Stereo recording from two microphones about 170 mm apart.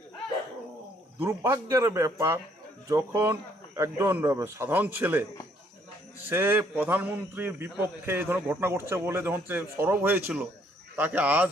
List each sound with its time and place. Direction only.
1.2 s a man's voice: 15° right (ahead or behind)
6.2 s a man's voice: 15° right (ahead or behind)